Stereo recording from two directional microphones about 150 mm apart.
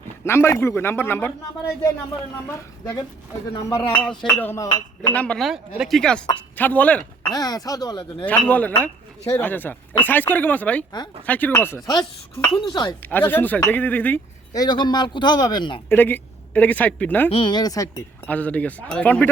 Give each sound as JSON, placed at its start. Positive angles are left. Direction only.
{"t": 0.3, "sound": "speech", "side_deg": 15}
{"t": 2.5, "sound": "a man's voice", "side_deg": 20}
{"t": 4.3, "sound": "a man's voice", "side_deg": 15}
{"t": 5.1, "sound": "speech", "side_deg": 10}
{"t": 7.3, "sound": "a man's voice", "side_deg": 25}
{"t": 8.2, "sound": "speech", "side_deg": 10}
{"t": 12.7, "sound": "a man's voice", "side_deg": 30}
{"t": 13.1, "sound": "speech", "side_deg": 15}
{"t": 14.5, "sound": "a man's voice", "side_deg": 25}
{"t": 15.9, "sound": "speech", "side_deg": 15}
{"t": 17.3, "sound": "a man's voice", "side_deg": 30}
{"t": 18.3, "sound": "speech", "side_deg": 10}